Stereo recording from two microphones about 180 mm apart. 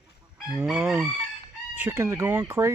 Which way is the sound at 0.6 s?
5° right (ahead or behind).